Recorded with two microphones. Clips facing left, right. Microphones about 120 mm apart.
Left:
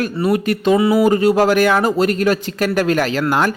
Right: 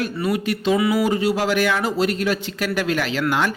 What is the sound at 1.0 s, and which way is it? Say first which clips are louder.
A man's voice: left 7 dB; 50° left (ahead or behind).